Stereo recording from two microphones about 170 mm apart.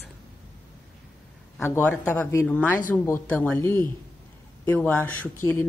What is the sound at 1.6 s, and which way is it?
Speech, 10° left (ahead or behind).